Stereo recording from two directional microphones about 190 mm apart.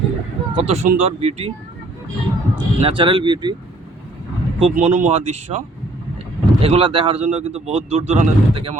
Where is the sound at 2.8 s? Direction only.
25° right (ahead or behind).